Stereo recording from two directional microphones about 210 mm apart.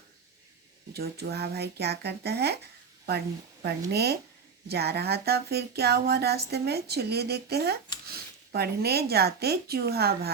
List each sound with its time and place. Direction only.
0.9 s speech: 50° right (ahead or behind)
3.6 s speech: 50° right (ahead or behind)